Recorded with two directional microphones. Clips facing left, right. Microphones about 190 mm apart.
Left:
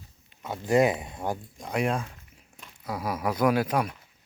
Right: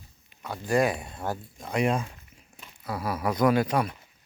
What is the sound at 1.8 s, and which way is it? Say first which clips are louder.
Speech: right 2 dB; centre (ahead or behind).